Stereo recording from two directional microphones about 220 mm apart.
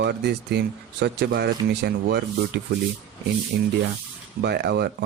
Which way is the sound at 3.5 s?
45° right (ahead or behind).